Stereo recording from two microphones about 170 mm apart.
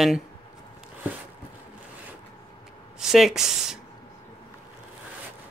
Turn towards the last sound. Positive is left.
turn(degrees=0)  # may be behind; listen again after turning